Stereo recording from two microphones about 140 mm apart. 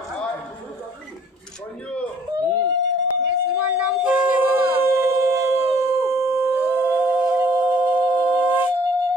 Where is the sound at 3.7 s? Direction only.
10° right (ahead or behind).